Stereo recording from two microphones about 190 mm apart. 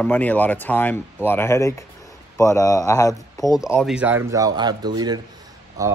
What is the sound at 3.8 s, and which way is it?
Speech, 5° right (ahead or behind).